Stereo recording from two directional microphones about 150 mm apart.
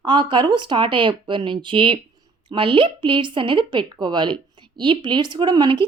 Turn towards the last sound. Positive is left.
turn(degrees=-30)  # may be behind; listen again after turning